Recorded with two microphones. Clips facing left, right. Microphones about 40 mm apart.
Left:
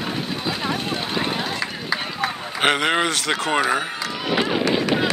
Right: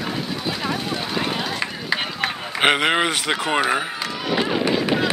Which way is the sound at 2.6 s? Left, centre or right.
Centre.